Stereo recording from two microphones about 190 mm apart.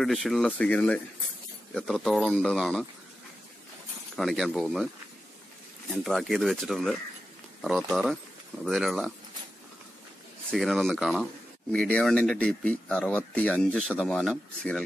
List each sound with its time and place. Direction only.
0.0 s speech: centre (ahead or behind)
4.2 s speech: centre (ahead or behind)
6.0 s speech: centre (ahead or behind)
10.5 s speech: centre (ahead or behind)